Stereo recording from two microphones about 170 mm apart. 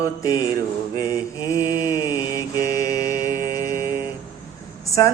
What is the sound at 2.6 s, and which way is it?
Mantra, 20° left (ahead or behind).